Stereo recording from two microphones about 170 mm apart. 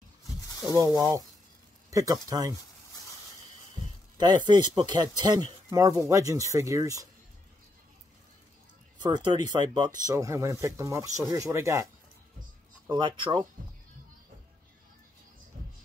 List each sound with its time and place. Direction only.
0.5 s a sound: 20° left (ahead or behind)
0.7 s speech: 20° right (ahead or behind)
4.2 s speech: 25° right (ahead or behind)
8.9 s speech: 25° right (ahead or behind)
12.9 s speech: 30° right (ahead or behind)